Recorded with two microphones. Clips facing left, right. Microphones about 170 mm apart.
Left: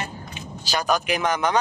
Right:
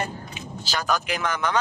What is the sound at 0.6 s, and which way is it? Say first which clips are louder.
Speech: left 3 dB; 15° left (ahead or behind).